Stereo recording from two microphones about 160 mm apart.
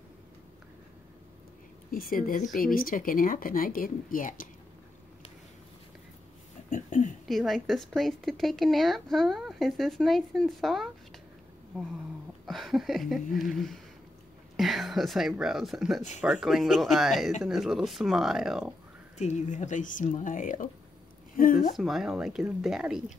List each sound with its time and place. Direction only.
1.9 s speech: 60° left (ahead or behind)
6.7 s a sound: 50° left (ahead or behind)
7.2 s speech: centre (ahead or behind)
12.4 s speech: centre (ahead or behind)
19.1 s speech: 45° left (ahead or behind); by 21.7 s 60° left (ahead or behind)
21.7 s speech: centre (ahead or behind)